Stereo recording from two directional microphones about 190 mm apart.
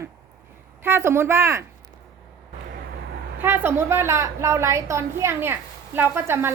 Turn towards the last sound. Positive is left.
turn(degrees=-15)  # may be behind; listen again after turning